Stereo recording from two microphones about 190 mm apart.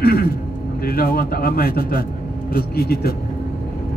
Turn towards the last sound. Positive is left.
turn(degrees=55)  # may be behind; listen again after turning